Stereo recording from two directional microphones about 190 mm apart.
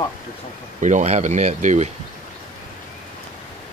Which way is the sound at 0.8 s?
40° right (ahead or behind).